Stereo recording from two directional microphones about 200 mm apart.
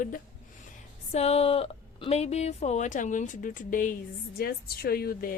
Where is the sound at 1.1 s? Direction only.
30° left (ahead or behind).